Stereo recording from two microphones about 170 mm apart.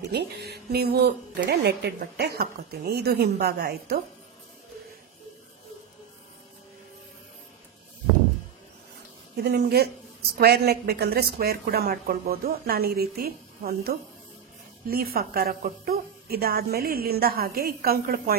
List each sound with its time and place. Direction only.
0.1 s a woman's voice: 75° right (ahead or behind)
9.4 s a woman's voice: 70° right (ahead or behind)